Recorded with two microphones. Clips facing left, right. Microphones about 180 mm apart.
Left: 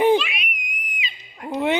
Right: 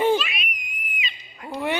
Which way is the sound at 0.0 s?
15° left (ahead or behind).